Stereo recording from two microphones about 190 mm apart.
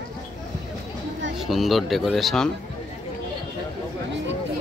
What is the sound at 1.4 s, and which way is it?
Speech, centre (ahead or behind).